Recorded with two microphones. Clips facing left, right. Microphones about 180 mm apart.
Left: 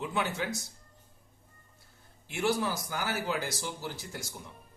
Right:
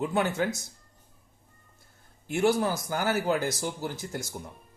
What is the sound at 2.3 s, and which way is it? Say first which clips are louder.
Speech: right 5 dB; 45° right (ahead or behind).